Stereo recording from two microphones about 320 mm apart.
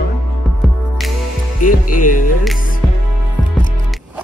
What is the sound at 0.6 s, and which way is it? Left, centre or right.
Music, centre.